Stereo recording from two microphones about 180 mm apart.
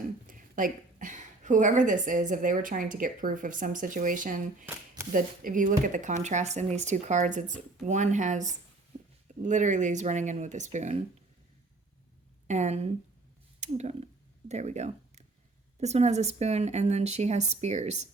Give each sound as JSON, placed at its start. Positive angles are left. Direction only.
{"t": 0.3, "sound": "a woman's voice", "side_deg": -50}
{"t": 12.5, "sound": "speech", "side_deg": -40}
{"t": 13.6, "sound": "a sound", "side_deg": -40}
{"t": 15.8, "sound": "speech", "side_deg": -40}